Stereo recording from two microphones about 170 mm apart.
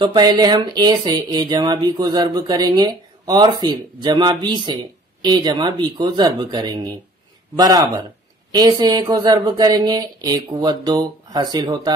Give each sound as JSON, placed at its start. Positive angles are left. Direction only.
{"t": 0.0, "sound": "speech", "side_deg": -25}